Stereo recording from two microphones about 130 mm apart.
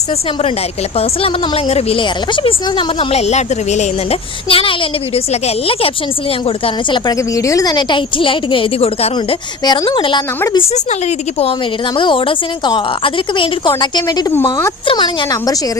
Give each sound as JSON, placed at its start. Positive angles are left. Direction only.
{"t": 0.9, "sound": "a woman's voice", "side_deg": 50}
{"t": 4.4, "sound": "a woman's voice", "side_deg": 45}
{"t": 6.9, "sound": "a woman's voice", "side_deg": 25}
{"t": 9.6, "sound": "a woman's voice", "side_deg": 35}
{"t": 11.9, "sound": "a woman's voice", "side_deg": 40}
{"t": 14.3, "sound": "speech", "side_deg": 20}
{"t": 14.8, "sound": "a woman's voice", "side_deg": 35}